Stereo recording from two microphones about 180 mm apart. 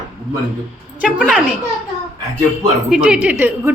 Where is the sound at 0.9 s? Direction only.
5° right (ahead or behind).